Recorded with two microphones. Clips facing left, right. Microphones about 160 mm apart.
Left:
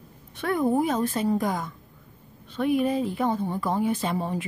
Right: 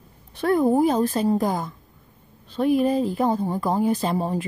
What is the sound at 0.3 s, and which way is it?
Speech, 35° right (ahead or behind).